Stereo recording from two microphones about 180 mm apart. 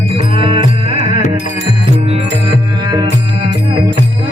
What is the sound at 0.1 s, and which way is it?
Music, 30° right (ahead or behind).